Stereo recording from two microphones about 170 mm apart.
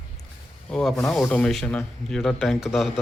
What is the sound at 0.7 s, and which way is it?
Speech, 5° left (ahead or behind).